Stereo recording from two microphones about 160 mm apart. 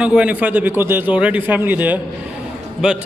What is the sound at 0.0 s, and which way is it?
A man's voice, 5° right (ahead or behind).